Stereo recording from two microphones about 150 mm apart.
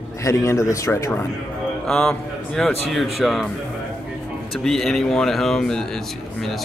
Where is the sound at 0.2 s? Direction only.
20° left (ahead or behind).